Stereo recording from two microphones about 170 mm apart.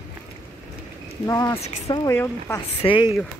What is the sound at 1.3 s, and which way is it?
Speech, 15° left (ahead or behind).